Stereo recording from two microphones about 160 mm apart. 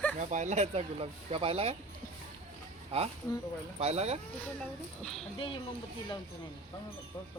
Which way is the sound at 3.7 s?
40° right (ahead or behind).